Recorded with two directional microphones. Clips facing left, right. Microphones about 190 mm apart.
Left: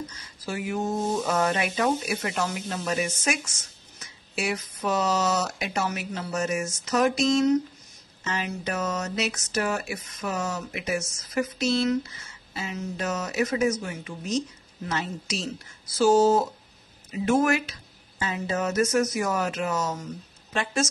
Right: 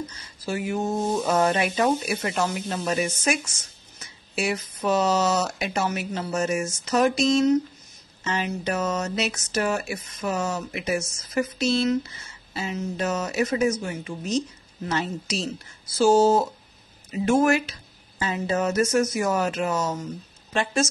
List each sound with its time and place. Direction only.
0.1 s a woman's voice: 30° right (ahead or behind)